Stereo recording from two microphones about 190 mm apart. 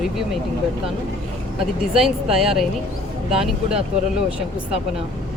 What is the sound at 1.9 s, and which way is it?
Speech, centre (ahead or behind).